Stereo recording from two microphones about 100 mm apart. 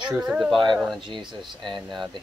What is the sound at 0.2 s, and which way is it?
Speech, 5° right (ahead or behind).